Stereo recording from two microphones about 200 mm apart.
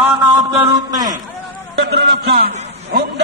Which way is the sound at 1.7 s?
55° right (ahead or behind).